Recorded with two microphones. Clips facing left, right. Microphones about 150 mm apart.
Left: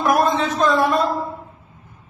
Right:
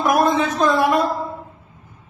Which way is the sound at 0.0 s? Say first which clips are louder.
Right 1 dB; 15° right (ahead or behind).